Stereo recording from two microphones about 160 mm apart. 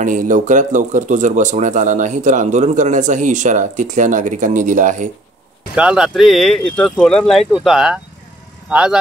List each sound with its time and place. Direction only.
0.0 s speech: 50° right (ahead or behind)
5.8 s speech: 5° right (ahead or behind)